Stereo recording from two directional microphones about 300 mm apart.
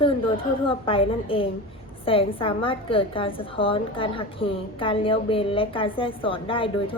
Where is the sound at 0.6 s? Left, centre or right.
Centre.